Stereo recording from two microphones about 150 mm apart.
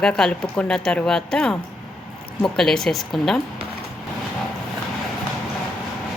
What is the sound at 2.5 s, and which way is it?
Speech, 5° left (ahead or behind).